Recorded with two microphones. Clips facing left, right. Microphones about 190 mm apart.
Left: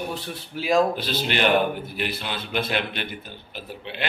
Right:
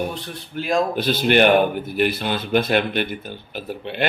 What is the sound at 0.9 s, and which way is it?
A man's voice, 55° right (ahead or behind).